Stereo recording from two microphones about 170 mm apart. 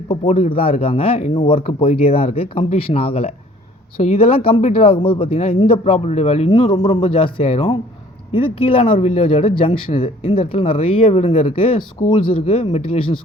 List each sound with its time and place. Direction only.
0.3 s speech: 45° left (ahead or behind)